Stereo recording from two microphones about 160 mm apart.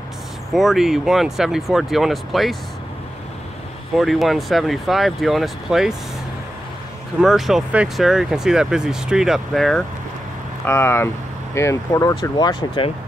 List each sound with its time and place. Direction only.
0.5 s speech: centre (ahead or behind)
3.9 s speech: centre (ahead or behind)
7.2 s speech: centre (ahead or behind)
10.6 s speech: 15° left (ahead or behind)